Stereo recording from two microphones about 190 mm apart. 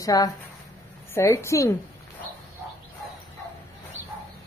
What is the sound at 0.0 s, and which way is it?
A woman's voice, 20° left (ahead or behind).